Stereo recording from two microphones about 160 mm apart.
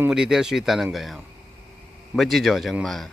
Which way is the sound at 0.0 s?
5° right (ahead or behind).